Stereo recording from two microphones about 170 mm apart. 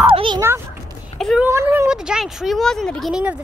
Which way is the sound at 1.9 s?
5° right (ahead or behind).